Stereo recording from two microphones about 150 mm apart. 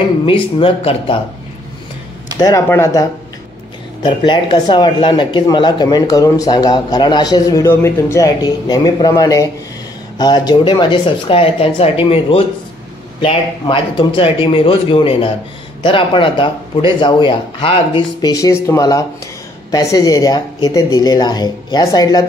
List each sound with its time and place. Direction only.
0.2 s speech: 35° left (ahead or behind)
2.4 s speech: 20° left (ahead or behind)
4.0 s speech: 30° left (ahead or behind)
18.3 s speech: 20° left (ahead or behind)